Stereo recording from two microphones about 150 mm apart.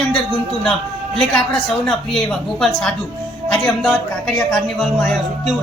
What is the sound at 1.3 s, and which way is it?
A man's voice, 5° left (ahead or behind).